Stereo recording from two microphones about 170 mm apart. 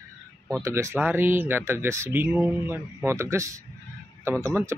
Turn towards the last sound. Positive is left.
turn(degrees=-15)  # may be behind; listen again after turning